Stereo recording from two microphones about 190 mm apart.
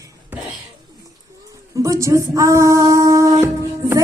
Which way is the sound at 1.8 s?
15° right (ahead or behind).